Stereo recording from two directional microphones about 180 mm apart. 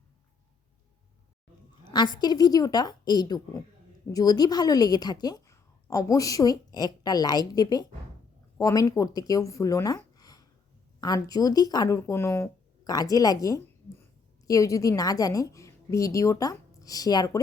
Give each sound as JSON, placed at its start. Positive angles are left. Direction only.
{"t": 1.8, "sound": "a woman's voice", "side_deg": 25}
{"t": 10.2, "sound": "a sound", "side_deg": 20}
{"t": 11.0, "sound": "a woman's voice", "side_deg": 20}